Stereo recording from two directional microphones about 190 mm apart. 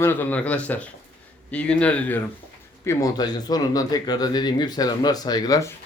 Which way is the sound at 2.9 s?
15° left (ahead or behind).